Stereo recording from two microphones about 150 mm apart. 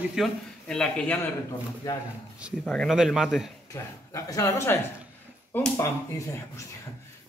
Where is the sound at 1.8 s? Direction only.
25° left (ahead or behind).